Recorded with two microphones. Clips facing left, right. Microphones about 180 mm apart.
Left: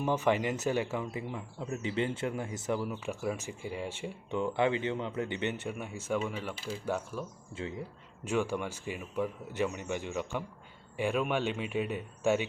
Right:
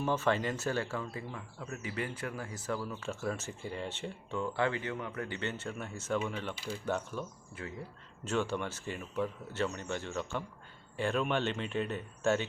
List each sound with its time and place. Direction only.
0.0 s speech: 15° left (ahead or behind)